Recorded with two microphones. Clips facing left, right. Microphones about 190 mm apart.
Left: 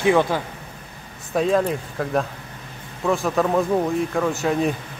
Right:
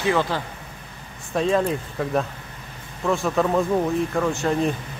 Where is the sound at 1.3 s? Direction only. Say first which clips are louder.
Left 1 dB; centre (ahead or behind).